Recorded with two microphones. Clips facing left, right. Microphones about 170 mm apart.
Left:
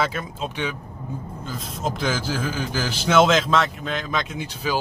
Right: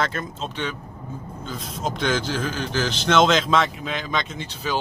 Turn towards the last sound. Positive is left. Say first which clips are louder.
# left 1 dB
turn(degrees=10)  # may be behind; listen again after turning